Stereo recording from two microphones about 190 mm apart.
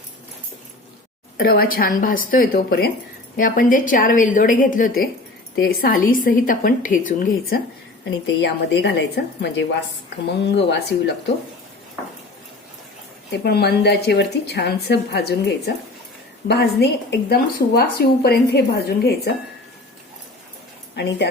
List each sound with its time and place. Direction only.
1.4 s a woman's voice: 50° left (ahead or behind)
8.0 s speech: 60° left (ahead or behind)
13.3 s speech: 60° left (ahead or behind)
20.9 s speech: 65° left (ahead or behind)